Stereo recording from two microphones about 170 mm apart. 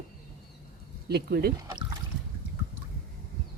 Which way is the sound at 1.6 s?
25° right (ahead or behind).